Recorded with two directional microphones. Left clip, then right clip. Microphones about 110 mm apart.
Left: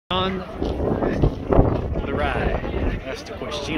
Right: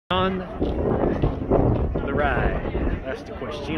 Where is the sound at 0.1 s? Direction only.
15° left (ahead or behind).